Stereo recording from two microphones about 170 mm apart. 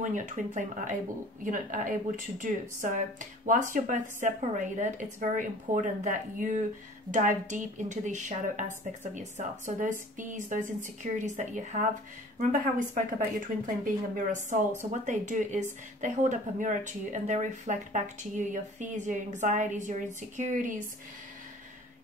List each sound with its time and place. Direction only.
0.0 s speech: 45° right (ahead or behind)